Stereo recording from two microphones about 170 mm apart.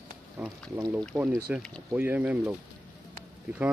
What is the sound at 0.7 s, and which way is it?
Speech, 15° right (ahead or behind).